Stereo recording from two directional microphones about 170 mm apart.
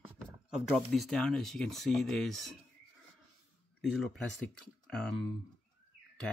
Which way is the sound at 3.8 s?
Centre (ahead or behind).